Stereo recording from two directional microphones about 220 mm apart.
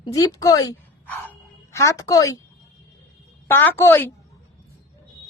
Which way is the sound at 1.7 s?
15° left (ahead or behind).